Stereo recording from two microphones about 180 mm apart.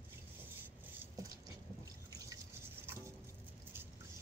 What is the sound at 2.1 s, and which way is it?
Drip, 20° right (ahead or behind).